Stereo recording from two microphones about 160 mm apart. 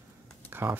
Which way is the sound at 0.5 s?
15° right (ahead or behind).